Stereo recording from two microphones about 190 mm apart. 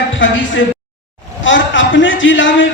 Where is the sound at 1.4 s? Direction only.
75° left (ahead or behind).